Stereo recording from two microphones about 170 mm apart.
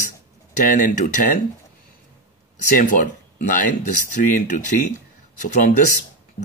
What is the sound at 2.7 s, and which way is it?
Speech, 50° left (ahead or behind).